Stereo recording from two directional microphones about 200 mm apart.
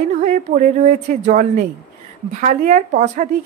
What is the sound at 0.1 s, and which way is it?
Speech, 40° right (ahead or behind).